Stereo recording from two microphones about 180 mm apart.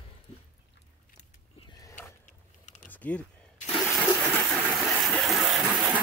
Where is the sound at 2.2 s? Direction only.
45° left (ahead or behind).